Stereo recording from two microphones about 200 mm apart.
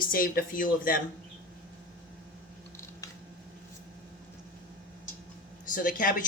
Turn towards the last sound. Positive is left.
turn(degrees=40)  # may be behind; listen again after turning